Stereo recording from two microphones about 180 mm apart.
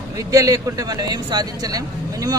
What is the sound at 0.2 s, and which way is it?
Speech, 20° right (ahead or behind).